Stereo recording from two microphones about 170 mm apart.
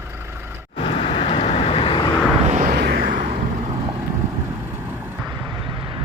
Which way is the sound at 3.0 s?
50° right (ahead or behind).